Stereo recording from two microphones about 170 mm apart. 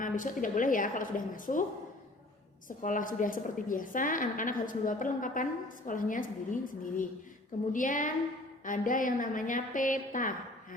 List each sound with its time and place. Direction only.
0.0 s a woman's voice: 50° left (ahead or behind)
2.6 s a woman's voice: 50° left (ahead or behind)